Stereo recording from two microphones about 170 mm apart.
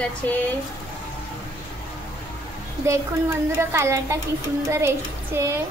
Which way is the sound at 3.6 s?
15° right (ahead or behind).